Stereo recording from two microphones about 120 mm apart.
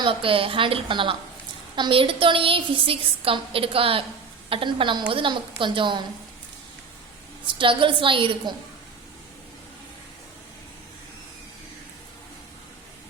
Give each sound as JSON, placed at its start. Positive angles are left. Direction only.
{"t": 0.0, "sound": "a woman's voice", "side_deg": -50}
{"t": 7.4, "sound": "a woman's voice", "side_deg": -45}